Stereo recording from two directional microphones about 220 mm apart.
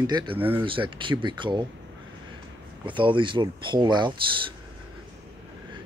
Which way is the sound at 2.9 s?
20° right (ahead or behind).